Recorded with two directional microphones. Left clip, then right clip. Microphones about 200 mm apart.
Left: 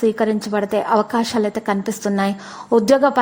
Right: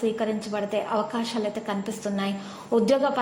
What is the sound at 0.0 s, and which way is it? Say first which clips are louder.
A woman's voice: left 8 dB; 45° left (ahead or behind).